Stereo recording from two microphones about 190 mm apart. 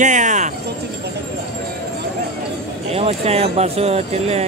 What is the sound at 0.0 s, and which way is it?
Music, 40° right (ahead or behind).